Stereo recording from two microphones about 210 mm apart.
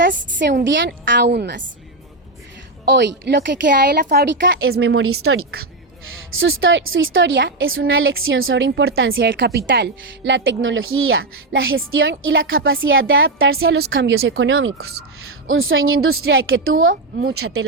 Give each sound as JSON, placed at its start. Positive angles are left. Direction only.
{"t": 0.0, "sound": "a woman's voice", "side_deg": -60}
{"t": 2.8, "sound": "a woman's voice", "side_deg": -55}
{"t": 6.4, "sound": "a woman's voice", "side_deg": -65}
{"t": 9.0, "sound": "a woman's voice", "side_deg": -65}
{"t": 13.7, "sound": "a woman's voice", "side_deg": -60}
{"t": 17.2, "sound": "a woman's voice", "side_deg": -50}
{"t": 17.4, "sound": "speech", "side_deg": -90}